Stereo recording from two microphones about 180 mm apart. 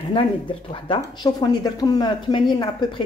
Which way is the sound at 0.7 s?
25° left (ahead or behind).